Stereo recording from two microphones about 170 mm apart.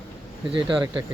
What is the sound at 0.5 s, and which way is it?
Speech, 25° right (ahead or behind).